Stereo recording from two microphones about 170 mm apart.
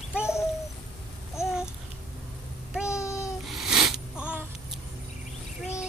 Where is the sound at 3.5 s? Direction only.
Centre (ahead or behind).